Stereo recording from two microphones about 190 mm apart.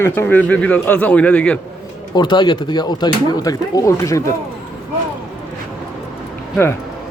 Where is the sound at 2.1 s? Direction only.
25° left (ahead or behind).